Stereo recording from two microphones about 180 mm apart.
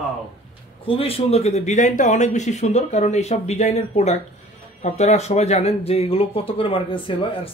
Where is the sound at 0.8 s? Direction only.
30° left (ahead or behind).